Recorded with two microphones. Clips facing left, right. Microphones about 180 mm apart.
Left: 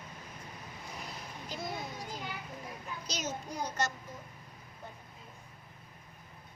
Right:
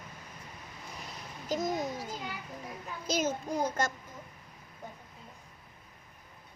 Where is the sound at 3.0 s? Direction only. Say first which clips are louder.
Right 9 dB; 50° right (ahead or behind).